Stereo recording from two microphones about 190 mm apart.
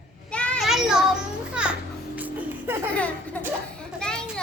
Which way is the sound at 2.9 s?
10° left (ahead or behind).